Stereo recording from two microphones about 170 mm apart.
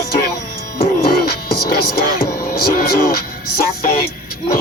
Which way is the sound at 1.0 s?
65° left (ahead or behind).